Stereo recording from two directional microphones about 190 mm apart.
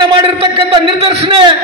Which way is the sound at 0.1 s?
25° right (ahead or behind).